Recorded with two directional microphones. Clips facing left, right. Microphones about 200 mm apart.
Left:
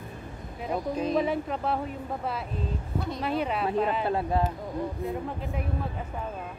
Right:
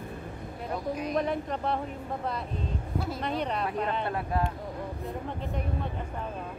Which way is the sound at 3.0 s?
Centre (ahead or behind).